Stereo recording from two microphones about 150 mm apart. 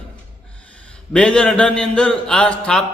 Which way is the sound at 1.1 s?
5° left (ahead or behind).